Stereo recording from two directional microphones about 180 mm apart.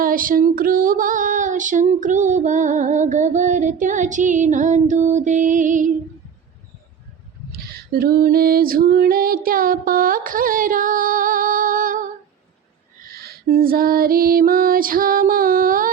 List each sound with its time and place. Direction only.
0.0 s female singing: 50° right (ahead or behind)
7.9 s female singing: 55° right (ahead or behind)